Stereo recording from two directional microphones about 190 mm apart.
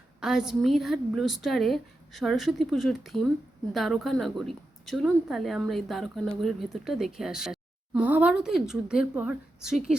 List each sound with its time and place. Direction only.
0.2 s a woman's voice: centre (ahead or behind)